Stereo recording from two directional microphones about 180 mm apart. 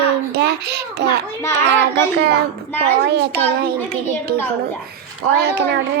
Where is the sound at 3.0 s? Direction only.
70° right (ahead or behind).